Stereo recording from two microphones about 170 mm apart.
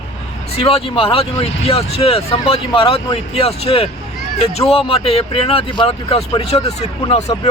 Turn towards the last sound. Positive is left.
turn(degrees=40)  # may be behind; listen again after turning